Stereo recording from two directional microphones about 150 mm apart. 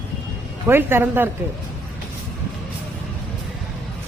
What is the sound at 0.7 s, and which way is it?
Speech, 15° right (ahead or behind).